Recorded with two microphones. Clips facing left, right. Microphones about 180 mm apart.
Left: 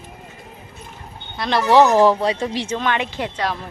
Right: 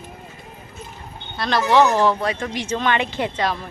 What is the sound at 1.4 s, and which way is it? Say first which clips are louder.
Speech: left 1 dB; 25° left (ahead or behind).